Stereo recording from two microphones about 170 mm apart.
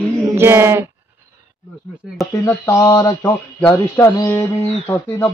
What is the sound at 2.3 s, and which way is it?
Speech, 15° left (ahead or behind).